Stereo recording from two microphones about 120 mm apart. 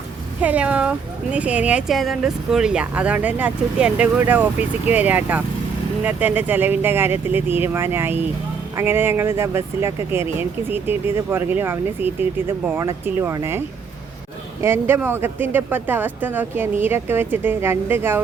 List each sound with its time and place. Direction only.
0.4 s speech: 10° right (ahead or behind)
14.6 s speech: 20° right (ahead or behind)